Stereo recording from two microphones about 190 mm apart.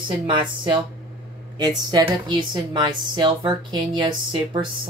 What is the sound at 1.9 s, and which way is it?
A woman's voice, 20° right (ahead or behind).